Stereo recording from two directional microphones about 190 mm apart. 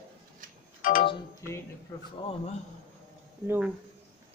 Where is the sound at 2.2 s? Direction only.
30° left (ahead or behind).